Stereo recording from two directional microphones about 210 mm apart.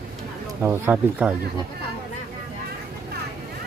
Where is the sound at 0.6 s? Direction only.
10° right (ahead or behind).